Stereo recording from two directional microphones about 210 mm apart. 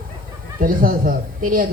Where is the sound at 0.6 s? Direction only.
40° right (ahead or behind).